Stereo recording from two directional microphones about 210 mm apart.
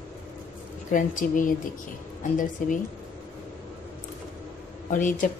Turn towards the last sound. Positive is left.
turn(degrees=40)  # may be behind; listen again after turning